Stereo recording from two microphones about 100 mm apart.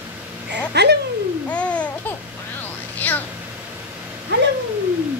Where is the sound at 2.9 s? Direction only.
15° left (ahead or behind).